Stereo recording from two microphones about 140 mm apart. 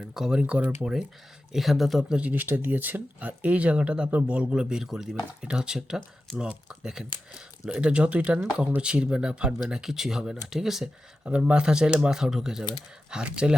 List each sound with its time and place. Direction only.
0.1 s speech: 5° right (ahead or behind)